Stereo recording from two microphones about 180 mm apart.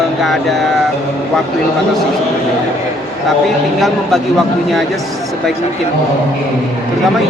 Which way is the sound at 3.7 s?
Centre (ahead or behind).